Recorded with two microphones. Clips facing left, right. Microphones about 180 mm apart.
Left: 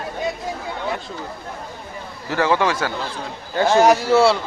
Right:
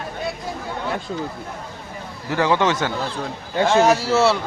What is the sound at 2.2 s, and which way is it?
Speech, 15° right (ahead or behind).